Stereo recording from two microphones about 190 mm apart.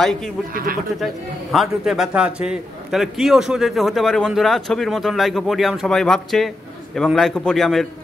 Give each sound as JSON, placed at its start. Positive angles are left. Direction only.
{"t": 0.0, "sound": "a man's voice", "side_deg": 5}
{"t": 0.5, "sound": "speech", "side_deg": -50}
{"t": 0.9, "sound": "a man's voice", "side_deg": 0}